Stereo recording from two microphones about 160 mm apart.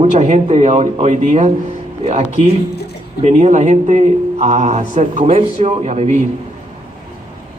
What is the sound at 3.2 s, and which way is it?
Speech, 50° right (ahead or behind).